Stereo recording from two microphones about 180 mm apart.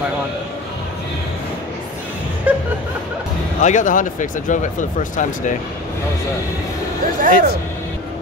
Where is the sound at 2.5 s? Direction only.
10° right (ahead or behind).